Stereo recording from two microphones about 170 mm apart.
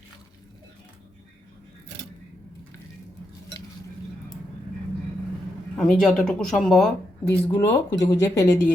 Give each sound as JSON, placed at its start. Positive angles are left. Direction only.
{"t": 5.7, "sound": "speech", "side_deg": 5}
{"t": 7.3, "sound": "speech", "side_deg": 15}